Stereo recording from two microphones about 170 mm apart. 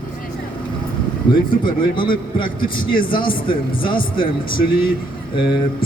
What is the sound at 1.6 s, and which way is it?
A man's voice, 30° left (ahead or behind).